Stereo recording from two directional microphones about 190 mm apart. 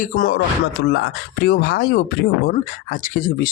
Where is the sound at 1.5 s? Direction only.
55° left (ahead or behind).